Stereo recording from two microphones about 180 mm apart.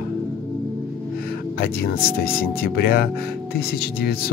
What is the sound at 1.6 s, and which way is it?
Speech, 60° left (ahead or behind).